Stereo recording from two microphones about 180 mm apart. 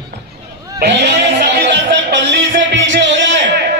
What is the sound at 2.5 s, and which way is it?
Music, 85° right.